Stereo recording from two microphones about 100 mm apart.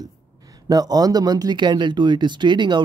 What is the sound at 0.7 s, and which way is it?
Speech, 40° right (ahead or behind).